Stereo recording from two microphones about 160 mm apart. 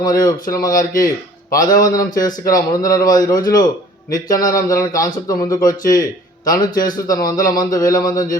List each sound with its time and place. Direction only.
0.0 s a man's voice: 25° left (ahead or behind)